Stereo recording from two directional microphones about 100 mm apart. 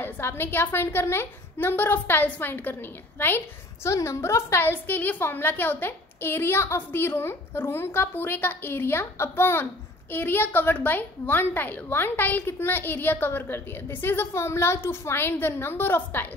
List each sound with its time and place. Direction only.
0.0 s a woman's voice: 20° left (ahead or behind)